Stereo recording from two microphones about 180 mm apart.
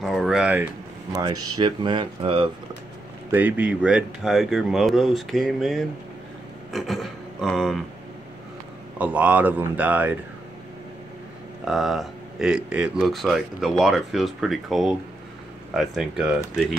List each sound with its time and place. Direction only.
0.0 s a sound: centre (ahead or behind)
1.2 s speech: 20° right (ahead or behind)
3.3 s speech: 10° right (ahead or behind)
6.7 s a sound: centre (ahead or behind)
8.9 s speech: 10° right (ahead or behind)
11.6 s speech: centre (ahead or behind)